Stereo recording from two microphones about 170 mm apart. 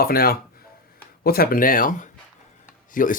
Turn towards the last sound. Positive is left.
turn(degrees=50)  # may be behind; listen again after turning